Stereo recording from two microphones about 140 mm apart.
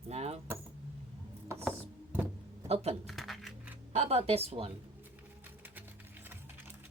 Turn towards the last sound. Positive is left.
turn(degrees=-15)  # may be behind; listen again after turning